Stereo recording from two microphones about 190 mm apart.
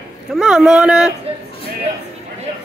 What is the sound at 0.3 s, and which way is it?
Speech, centre (ahead or behind).